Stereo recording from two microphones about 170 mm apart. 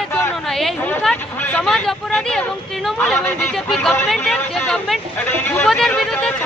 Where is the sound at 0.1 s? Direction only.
15° left (ahead or behind).